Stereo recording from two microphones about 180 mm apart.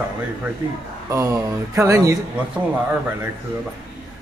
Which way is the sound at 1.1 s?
15° right (ahead or behind).